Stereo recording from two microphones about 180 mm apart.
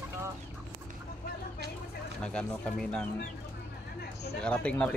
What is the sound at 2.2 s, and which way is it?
Speech, 5° left (ahead or behind).